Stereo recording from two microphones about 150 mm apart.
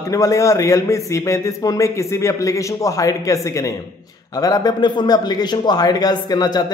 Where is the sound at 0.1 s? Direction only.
20° left (ahead or behind).